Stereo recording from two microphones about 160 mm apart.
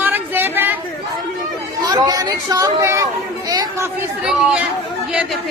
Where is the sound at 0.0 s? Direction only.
15° right (ahead or behind).